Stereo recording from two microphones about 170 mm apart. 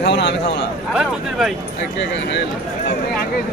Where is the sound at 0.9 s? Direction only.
Centre (ahead or behind).